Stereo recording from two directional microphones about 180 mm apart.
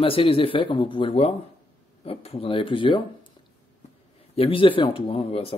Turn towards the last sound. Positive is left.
turn(degrees=30)  # may be behind; listen again after turning